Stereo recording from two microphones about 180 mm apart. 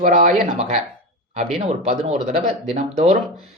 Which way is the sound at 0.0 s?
45° right (ahead or behind).